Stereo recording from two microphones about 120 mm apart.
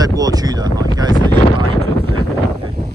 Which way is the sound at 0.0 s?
30° right (ahead or behind).